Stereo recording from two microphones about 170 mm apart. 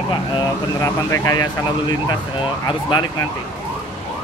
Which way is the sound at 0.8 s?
20° left (ahead or behind).